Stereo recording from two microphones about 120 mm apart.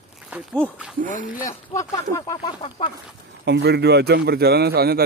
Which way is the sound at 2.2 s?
40° left (ahead or behind).